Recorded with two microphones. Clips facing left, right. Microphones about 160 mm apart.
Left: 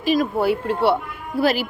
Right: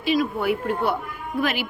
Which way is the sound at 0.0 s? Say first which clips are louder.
Left 3 dB; 45° left (ahead or behind).